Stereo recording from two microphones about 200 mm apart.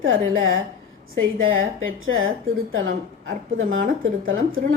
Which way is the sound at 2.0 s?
85° right.